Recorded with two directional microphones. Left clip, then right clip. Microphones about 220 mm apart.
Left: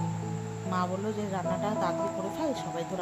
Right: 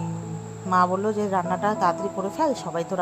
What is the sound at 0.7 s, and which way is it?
Speech, 35° right (ahead or behind).